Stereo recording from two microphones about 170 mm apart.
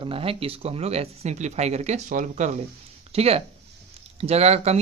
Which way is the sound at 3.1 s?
35° right (ahead or behind).